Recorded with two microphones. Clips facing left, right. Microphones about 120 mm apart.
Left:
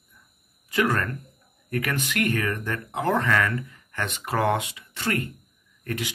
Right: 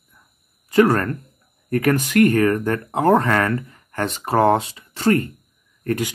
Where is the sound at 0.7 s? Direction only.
40° right (ahead or behind).